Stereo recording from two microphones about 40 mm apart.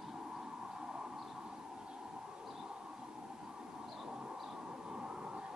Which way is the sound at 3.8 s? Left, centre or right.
Centre.